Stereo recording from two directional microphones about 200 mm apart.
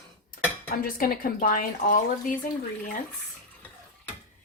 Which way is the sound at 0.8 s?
45° left (ahead or behind).